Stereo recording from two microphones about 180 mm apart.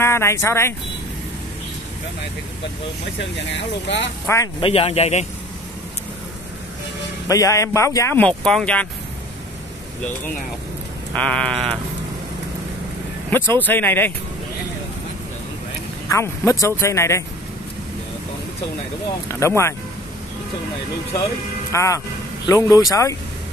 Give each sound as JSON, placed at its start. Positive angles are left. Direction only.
{"t": 0.0, "sound": "speech", "side_deg": 15}
{"t": 3.2, "sound": "speech", "side_deg": 75}
{"t": 4.6, "sound": "speech", "side_deg": 30}
{"t": 7.2, "sound": "speech", "side_deg": 15}
{"t": 11.1, "sound": "sheep", "side_deg": 5}
{"t": 13.3, "sound": "speech", "side_deg": 10}
{"t": 16.1, "sound": "speech", "side_deg": 15}
{"t": 19.2, "sound": "speech", "side_deg": 15}
{"t": 21.7, "sound": "speech", "side_deg": 15}